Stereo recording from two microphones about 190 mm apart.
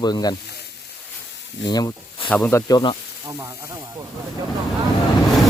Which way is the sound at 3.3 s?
15° right (ahead or behind).